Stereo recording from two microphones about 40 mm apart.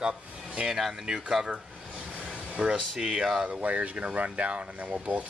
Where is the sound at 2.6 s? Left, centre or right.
Right.